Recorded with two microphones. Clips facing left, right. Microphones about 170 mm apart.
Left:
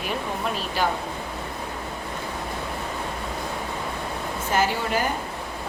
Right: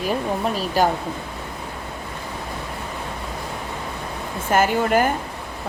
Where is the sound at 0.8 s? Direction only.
40° right (ahead or behind).